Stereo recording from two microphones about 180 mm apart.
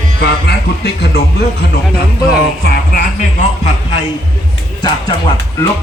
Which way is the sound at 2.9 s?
55° left (ahead or behind).